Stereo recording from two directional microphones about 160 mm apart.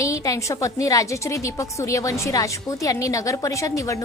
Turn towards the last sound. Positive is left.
turn(degrees=20)  # may be behind; listen again after turning